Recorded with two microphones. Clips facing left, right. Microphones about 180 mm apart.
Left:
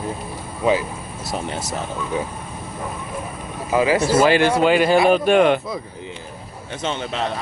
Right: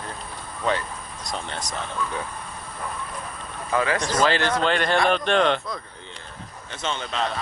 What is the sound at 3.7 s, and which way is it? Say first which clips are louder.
Speech: left 7 dB; 10° left (ahead or behind).